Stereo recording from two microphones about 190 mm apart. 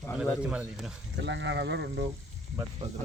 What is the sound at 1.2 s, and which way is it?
Speech, 70° right (ahead or behind).